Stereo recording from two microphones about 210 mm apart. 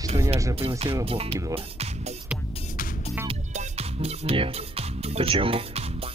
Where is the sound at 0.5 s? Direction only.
25° right (ahead or behind).